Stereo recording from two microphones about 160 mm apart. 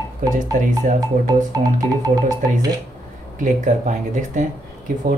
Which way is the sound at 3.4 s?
50° right (ahead or behind).